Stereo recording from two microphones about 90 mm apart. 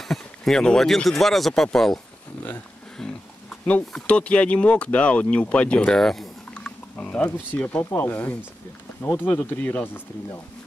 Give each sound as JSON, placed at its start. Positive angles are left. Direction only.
{"t": 0.0, "sound": "speech", "side_deg": 5}
{"t": 3.0, "sound": "speech", "side_deg": 10}